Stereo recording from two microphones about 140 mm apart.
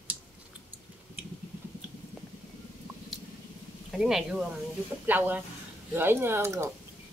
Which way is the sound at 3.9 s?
Centre (ahead or behind).